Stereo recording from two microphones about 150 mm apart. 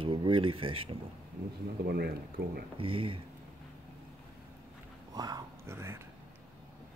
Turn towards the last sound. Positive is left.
turn(degrees=-15)  # may be behind; listen again after turning